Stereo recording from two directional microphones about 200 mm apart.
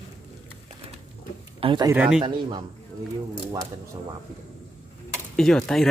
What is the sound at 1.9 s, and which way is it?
Speech, 5° right (ahead or behind).